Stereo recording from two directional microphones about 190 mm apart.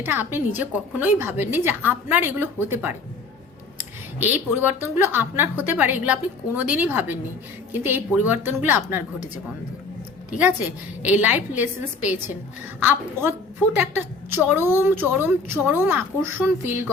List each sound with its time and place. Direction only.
0.0 s a woman's voice: 10° right (ahead or behind)
4.2 s a woman's voice: 10° right (ahead or behind)
10.3 s a woman's voice: 10° right (ahead or behind)